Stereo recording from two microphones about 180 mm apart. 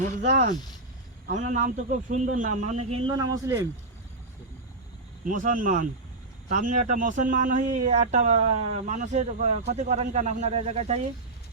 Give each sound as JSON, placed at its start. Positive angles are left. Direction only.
{"t": 1.3, "sound": "a man's voice", "side_deg": -45}
{"t": 3.2, "sound": "speech", "side_deg": -20}
{"t": 5.2, "sound": "a man's voice", "side_deg": -45}